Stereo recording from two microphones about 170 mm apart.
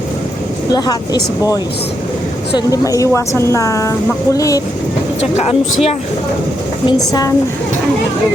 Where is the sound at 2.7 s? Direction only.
20° left (ahead or behind).